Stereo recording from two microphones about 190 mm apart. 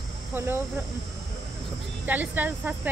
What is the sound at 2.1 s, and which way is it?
Speech, 10° right (ahead or behind).